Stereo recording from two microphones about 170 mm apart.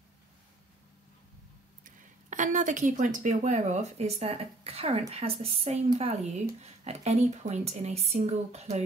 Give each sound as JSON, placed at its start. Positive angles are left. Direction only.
{"t": 1.9, "sound": "a woman's voice", "side_deg": -50}